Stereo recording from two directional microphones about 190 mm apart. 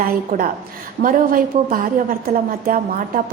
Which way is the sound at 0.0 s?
45° right (ahead or behind).